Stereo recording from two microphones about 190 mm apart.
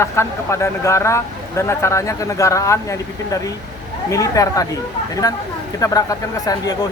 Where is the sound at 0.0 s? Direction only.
15° left (ahead or behind).